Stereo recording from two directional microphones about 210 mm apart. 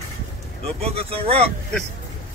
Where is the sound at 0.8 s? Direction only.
30° right (ahead or behind).